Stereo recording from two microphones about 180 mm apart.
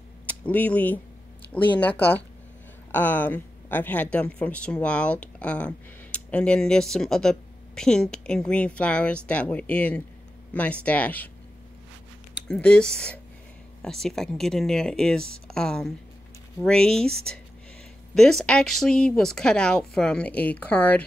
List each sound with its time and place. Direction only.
0.3 s a woman's voice: 10° left (ahead or behind)
12.4 s a woman's voice: 5° left (ahead or behind)